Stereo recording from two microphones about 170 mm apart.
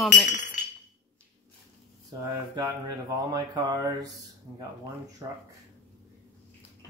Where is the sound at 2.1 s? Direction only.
20° right (ahead or behind).